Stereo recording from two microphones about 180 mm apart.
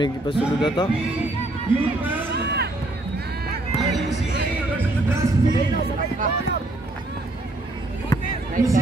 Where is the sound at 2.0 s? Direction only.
10° right (ahead or behind).